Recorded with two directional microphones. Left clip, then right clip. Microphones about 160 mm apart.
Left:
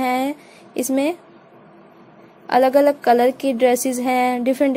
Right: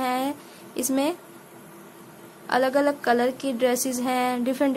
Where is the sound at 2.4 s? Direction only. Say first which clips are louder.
Left 7 dB; 30° left (ahead or behind).